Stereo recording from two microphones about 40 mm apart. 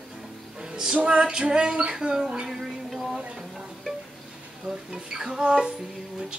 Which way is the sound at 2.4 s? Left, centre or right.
Centre.